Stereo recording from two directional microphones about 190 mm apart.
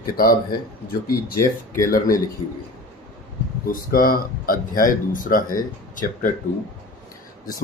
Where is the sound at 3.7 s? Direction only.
50° left (ahead or behind).